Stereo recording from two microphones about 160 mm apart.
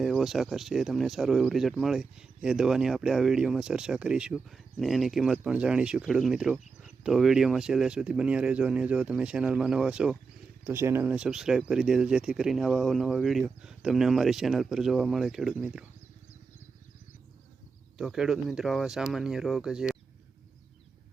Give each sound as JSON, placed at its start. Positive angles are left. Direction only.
{"t": 0.0, "sound": "speech", "side_deg": 0}
{"t": 17.9, "sound": "speech", "side_deg": -5}